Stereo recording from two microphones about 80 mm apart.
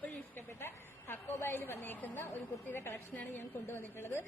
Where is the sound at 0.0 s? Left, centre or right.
Left.